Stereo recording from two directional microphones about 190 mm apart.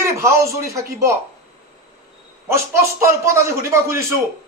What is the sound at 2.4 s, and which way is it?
A man's voice, 15° right (ahead or behind).